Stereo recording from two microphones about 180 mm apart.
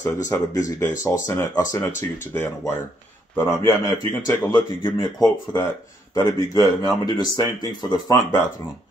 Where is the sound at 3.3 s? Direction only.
10° left (ahead or behind).